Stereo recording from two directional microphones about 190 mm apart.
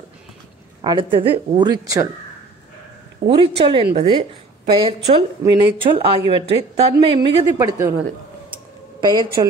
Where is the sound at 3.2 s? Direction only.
30° right (ahead or behind).